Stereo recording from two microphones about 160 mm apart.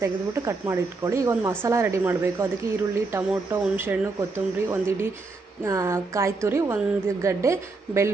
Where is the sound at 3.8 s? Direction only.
15° right (ahead or behind).